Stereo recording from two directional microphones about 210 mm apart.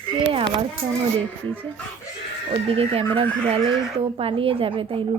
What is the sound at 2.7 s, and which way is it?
Speech, 25° right (ahead or behind).